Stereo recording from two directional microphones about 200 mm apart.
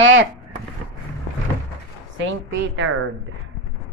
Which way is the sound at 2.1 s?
70° right (ahead or behind).